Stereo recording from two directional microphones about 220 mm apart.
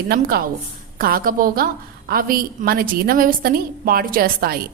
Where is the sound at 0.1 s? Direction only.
45° right (ahead or behind).